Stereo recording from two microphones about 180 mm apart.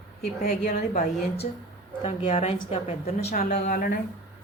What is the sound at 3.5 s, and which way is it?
Speech, 45° left (ahead or behind).